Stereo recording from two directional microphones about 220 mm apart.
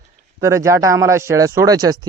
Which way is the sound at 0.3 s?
15° right (ahead or behind).